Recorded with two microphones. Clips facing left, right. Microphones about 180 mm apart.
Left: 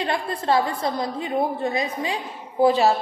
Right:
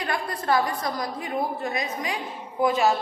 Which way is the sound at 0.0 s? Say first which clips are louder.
Left 3 dB; 25° left (ahead or behind).